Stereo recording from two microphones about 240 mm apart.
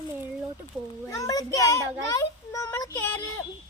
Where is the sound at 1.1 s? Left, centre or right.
Centre.